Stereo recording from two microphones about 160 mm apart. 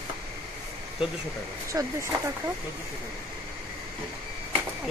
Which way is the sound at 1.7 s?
20° right (ahead or behind).